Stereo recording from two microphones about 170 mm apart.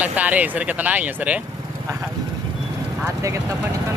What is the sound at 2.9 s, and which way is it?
Speech, 15° right (ahead or behind).